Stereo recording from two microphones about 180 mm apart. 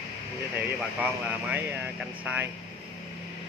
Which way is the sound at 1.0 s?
10° right (ahead or behind).